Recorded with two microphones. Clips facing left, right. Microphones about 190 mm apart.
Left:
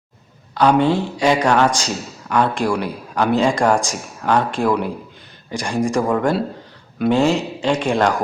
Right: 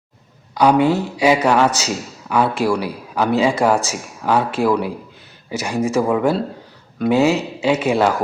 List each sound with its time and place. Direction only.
0.5 s a man's voice: 10° right (ahead or behind)